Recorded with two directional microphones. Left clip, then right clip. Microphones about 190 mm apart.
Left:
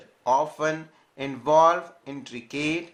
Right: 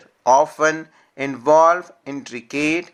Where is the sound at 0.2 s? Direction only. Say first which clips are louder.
Right 8 dB; 45° right (ahead or behind).